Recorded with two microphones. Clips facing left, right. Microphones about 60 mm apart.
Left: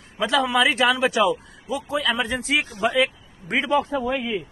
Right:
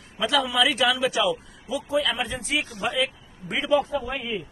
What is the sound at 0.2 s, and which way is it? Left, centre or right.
A man's voice, left.